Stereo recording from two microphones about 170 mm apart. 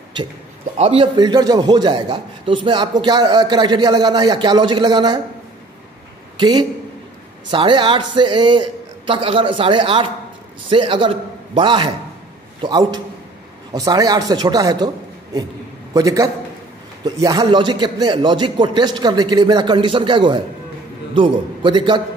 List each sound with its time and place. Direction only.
0.7 s a man's voice: 35° right (ahead or behind)
7.5 s a man's voice: 30° right (ahead or behind)
15.9 s a man's voice: 20° right (ahead or behind)